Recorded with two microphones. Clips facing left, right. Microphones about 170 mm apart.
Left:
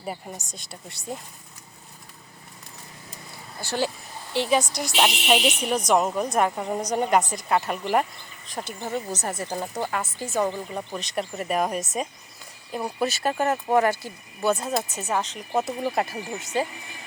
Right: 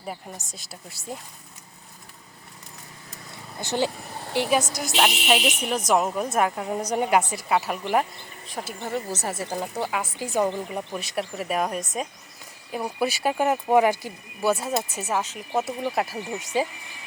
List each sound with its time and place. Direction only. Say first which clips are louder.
0.0 s speech: left 2 dB; centre (ahead or behind)
3.6 s speech: right 1 dB; 20° right (ahead or behind)
4.7 s speech: even; centre (ahead or behind)
9.5 s speech: right 1 dB; 10° left (ahead or behind)
9.8 s speech: right 1 dB; 10° right (ahead or behind)
12.8 s speech: right 1 dB; 10° right (ahead or behind)